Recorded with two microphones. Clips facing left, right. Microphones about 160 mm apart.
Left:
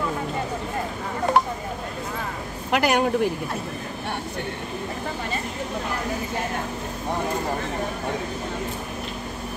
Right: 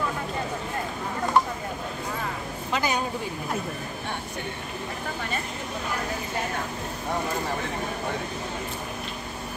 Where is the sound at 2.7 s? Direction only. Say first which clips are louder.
Left 7 dB; 80° left.